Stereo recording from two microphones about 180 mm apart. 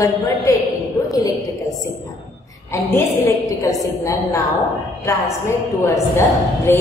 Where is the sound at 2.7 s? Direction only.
15° left (ahead or behind).